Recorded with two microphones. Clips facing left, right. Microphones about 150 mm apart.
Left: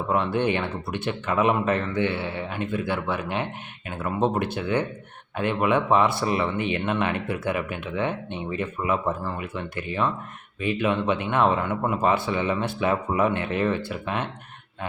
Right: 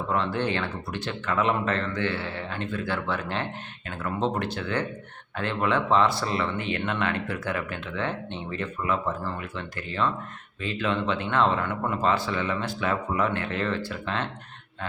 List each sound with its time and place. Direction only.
0.1 s speech: 20° left (ahead or behind)